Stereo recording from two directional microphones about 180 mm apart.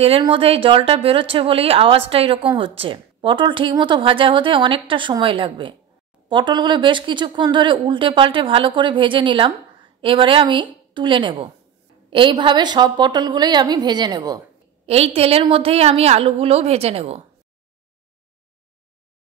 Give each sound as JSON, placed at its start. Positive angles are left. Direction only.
{"t": 0.0, "sound": "speech", "side_deg": -30}
{"t": 14.9, "sound": "a woman's voice", "side_deg": -35}